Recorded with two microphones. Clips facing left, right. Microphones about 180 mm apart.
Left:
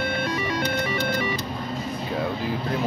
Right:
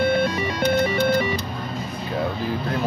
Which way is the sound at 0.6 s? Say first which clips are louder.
Right 6 dB; 25° right (ahead or behind).